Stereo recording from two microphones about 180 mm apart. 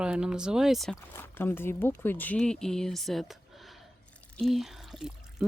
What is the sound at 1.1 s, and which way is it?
Speech, 10° left (ahead or behind).